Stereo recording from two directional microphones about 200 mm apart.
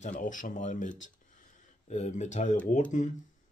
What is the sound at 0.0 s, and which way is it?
Speech, 40° left (ahead or behind).